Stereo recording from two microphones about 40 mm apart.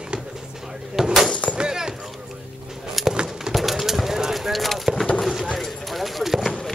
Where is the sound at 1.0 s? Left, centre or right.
Centre.